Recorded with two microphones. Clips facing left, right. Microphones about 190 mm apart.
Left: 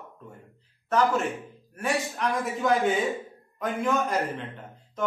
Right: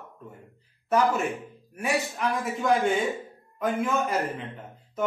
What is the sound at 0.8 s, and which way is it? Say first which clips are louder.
A man's voice: even; 10° right (ahead or behind).